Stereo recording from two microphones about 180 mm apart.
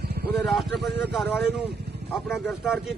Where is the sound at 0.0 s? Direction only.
60° right (ahead or behind).